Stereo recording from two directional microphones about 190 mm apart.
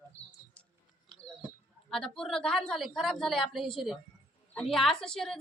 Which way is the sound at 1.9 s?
5° left (ahead or behind).